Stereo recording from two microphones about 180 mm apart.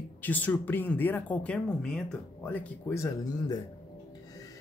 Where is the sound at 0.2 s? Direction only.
10° left (ahead or behind).